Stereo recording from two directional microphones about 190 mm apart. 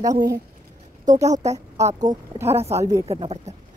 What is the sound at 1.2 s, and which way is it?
Speech, 15° right (ahead or behind).